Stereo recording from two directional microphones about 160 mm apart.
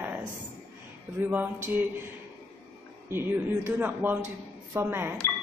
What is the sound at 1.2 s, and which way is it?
Speech, 10° right (ahead or behind).